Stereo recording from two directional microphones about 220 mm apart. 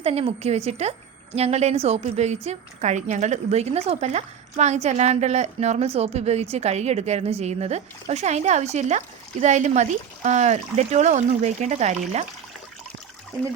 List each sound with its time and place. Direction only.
0.0 s a woman's voice: 25° right (ahead or behind)